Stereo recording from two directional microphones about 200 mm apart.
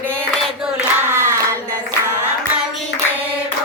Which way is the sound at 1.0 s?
10° right (ahead or behind).